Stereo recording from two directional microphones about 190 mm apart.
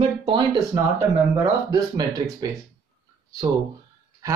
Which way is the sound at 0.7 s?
15° right (ahead or behind).